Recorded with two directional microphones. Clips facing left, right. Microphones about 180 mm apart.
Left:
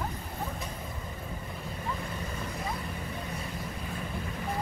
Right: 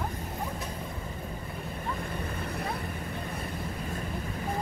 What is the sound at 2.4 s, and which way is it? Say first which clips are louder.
Vehicle: right 1 dB; 60° right (ahead or behind).